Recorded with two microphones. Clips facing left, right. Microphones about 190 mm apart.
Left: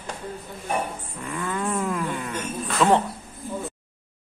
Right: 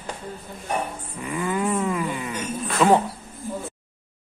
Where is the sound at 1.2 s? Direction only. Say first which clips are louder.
Right 4 dB; 10° right (ahead or behind).